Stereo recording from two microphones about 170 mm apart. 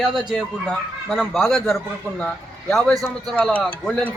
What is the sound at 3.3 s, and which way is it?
Speech, 5° left (ahead or behind).